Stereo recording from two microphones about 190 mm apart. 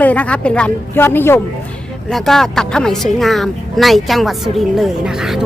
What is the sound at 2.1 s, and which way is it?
Speech, centre (ahead or behind).